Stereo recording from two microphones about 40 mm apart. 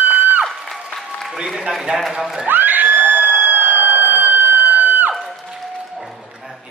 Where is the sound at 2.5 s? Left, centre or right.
Right.